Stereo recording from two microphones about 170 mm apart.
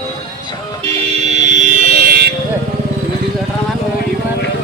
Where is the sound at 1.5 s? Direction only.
45° right (ahead or behind).